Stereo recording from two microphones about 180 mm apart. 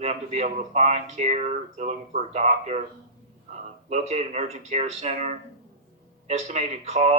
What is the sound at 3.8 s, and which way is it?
Speech, 40° right (ahead or behind).